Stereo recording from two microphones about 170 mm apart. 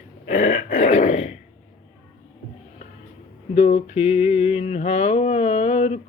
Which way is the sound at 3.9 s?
35° left (ahead or behind).